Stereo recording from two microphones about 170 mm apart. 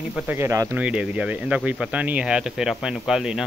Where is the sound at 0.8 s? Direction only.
5° right (ahead or behind).